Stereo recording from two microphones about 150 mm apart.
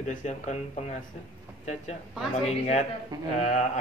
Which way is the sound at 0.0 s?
55° left (ahead or behind).